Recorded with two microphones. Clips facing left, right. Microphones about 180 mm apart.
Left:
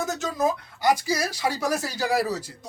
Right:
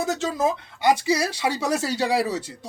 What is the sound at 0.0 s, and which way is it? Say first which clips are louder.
Speech: right 2 dB; 30° right (ahead or behind).